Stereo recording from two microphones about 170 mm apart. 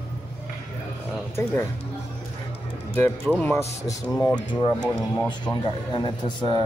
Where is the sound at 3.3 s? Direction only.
5° right (ahead or behind).